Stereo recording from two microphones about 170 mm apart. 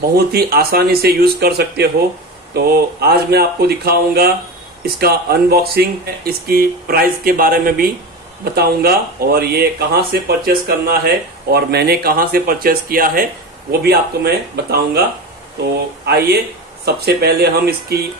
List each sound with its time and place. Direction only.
0.1 s speech: 65° right (ahead or behind)
16.1 s speech: 70° right (ahead or behind)